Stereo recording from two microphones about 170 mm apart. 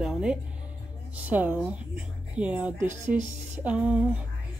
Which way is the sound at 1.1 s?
10° right (ahead or behind).